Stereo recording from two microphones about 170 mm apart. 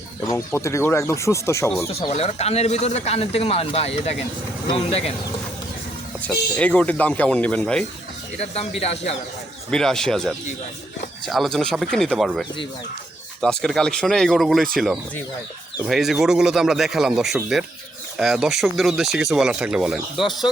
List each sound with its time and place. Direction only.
0.3 s speech: 20° left (ahead or behind)
1.9 s speech: 35° left (ahead or behind)
6.1 s speech: 10° left (ahead or behind)
8.8 s speech: 40° left (ahead or behind)
9.6 s speech: 5° left (ahead or behind)
15.9 s speech: centre (ahead or behind)